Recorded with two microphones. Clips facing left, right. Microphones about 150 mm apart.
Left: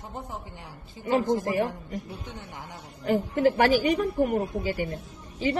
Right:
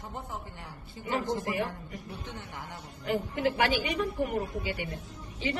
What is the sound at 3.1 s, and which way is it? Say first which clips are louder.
A woman's voice: left 6 dB; 40° left (ahead or behind).